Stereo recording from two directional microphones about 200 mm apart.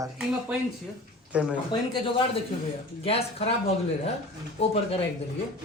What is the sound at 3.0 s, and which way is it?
Speech, 30° left (ahead or behind).